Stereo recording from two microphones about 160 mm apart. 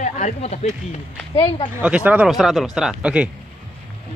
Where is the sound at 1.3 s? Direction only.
30° left (ahead or behind).